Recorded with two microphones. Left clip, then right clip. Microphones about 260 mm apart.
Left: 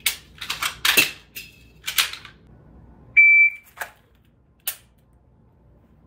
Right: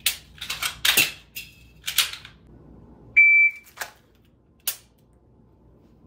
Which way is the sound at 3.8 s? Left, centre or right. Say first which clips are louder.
Left 2 dB; centre.